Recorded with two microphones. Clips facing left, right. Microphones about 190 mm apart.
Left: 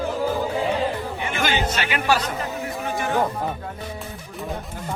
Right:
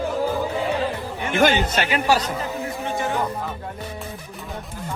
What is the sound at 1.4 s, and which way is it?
Speech, 50° right (ahead or behind).